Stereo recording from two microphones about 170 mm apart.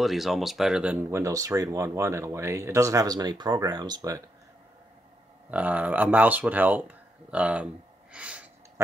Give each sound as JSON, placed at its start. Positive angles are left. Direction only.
{"t": 0.0, "sound": "speech", "side_deg": 0}
{"t": 1.1, "sound": "speech", "side_deg": -20}
{"t": 5.5, "sound": "speech", "side_deg": -10}